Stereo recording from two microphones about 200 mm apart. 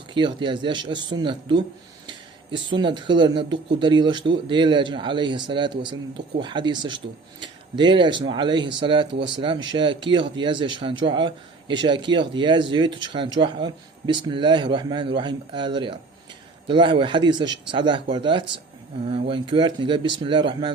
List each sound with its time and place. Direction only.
0.1 s speech: 25° right (ahead or behind)
9.1 s speech: 60° right (ahead or behind)
9.4 s speech: 25° right (ahead or behind)